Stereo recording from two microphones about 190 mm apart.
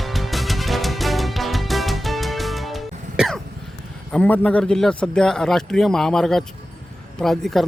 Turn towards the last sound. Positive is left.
turn(degrees=0)  # may be behind; listen again after turning